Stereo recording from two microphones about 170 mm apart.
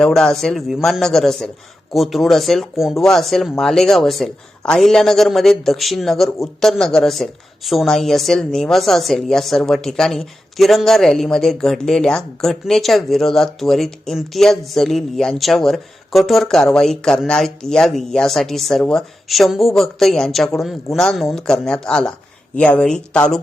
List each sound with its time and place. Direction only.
0.0 s speech: 5° left (ahead or behind)